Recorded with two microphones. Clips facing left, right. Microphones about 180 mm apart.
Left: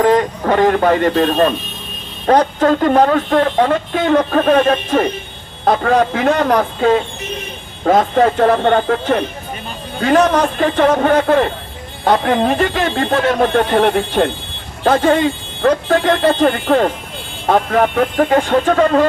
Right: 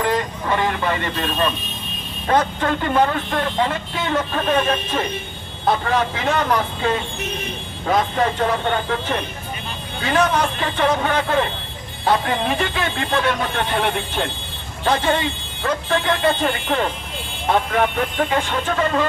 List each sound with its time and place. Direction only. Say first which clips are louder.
0.0 s speech: left 8 dB; 45° left (ahead or behind)